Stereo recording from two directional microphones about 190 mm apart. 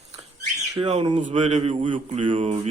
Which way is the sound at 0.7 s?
30° right (ahead or behind).